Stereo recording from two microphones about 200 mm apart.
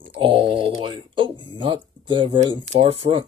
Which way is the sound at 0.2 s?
25° right (ahead or behind).